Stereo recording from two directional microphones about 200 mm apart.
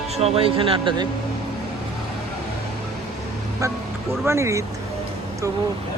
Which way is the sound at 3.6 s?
15° right (ahead or behind).